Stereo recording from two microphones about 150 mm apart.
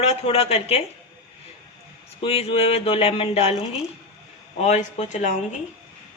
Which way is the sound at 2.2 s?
40° left (ahead or behind).